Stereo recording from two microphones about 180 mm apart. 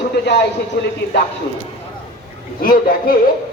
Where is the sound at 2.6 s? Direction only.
55° left (ahead or behind).